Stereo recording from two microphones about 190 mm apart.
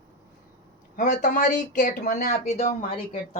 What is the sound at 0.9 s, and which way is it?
Speech, 40° left (ahead or behind).